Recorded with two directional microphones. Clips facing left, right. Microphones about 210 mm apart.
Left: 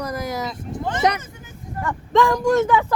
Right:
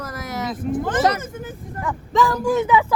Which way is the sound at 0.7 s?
50° right (ahead or behind).